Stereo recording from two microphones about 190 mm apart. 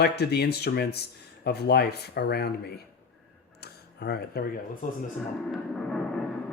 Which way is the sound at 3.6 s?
60° left (ahead or behind).